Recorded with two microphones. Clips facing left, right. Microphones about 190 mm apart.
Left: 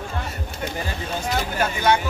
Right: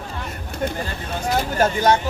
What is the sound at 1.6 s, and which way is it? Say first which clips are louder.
Speech: right 3 dB; 40° right (ahead or behind).